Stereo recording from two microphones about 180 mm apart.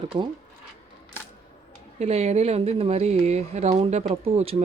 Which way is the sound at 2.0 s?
35° right (ahead or behind).